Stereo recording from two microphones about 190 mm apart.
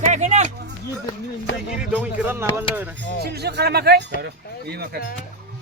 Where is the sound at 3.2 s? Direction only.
60° right (ahead or behind).